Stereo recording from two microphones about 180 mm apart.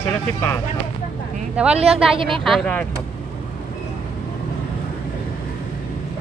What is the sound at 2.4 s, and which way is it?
Speech, 5° left (ahead or behind).